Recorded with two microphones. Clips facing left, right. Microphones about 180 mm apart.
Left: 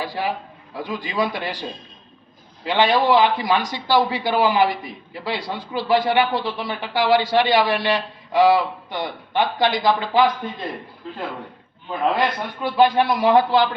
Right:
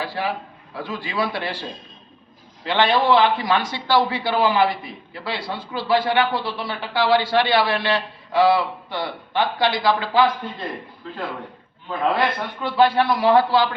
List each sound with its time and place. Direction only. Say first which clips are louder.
0.0 s speech: left 1 dB; 15° left (ahead or behind)
2.6 s speech: left 1 dB; 15° left (ahead or behind)
11.9 s speech: even; 15° left (ahead or behind)